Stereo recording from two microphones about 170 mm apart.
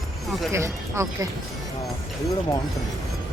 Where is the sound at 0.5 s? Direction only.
15° right (ahead or behind).